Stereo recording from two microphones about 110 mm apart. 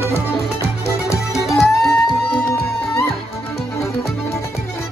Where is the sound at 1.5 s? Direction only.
Centre (ahead or behind).